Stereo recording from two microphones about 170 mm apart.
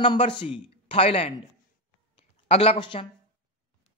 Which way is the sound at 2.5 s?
35° left (ahead or behind).